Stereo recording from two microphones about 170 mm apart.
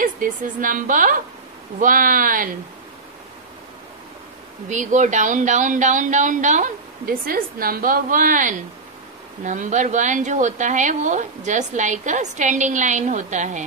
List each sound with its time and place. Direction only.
0.0 s a woman's voice: 50° right (ahead or behind)
4.6 s a woman's voice: 45° right (ahead or behind)